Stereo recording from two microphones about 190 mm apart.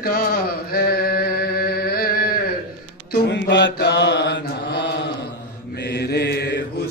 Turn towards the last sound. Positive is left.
turn(degrees=60)  # may be behind; listen again after turning